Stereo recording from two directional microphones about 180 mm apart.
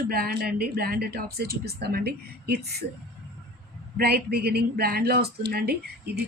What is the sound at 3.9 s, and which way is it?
Speech, 60° right (ahead or behind).